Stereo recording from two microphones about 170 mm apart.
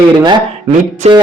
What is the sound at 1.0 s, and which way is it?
Speech, 40° right (ahead or behind).